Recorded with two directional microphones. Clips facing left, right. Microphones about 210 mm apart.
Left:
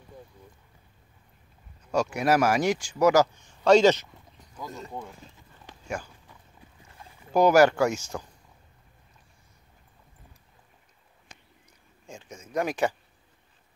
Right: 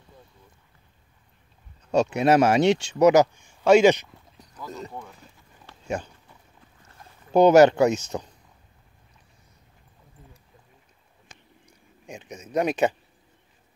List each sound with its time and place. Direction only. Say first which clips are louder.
1.9 s speech: right 4 dB; 25° right (ahead or behind)
4.6 s speech: right 1 dB; 15° left (ahead or behind)
5.7 s a sound: left 2 dB; 15° left (ahead or behind)
7.3 s speech: right 4 dB; 20° right (ahead or behind)
12.1 s speech: right 5 dB; 20° right (ahead or behind)